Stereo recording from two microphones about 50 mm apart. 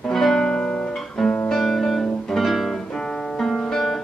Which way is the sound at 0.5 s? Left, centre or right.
Centre.